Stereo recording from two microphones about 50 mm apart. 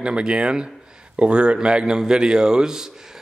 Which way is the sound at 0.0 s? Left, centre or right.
Centre.